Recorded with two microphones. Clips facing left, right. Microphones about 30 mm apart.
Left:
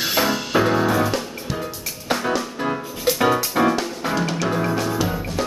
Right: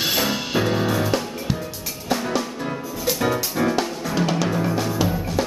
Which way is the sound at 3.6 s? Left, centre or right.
Left.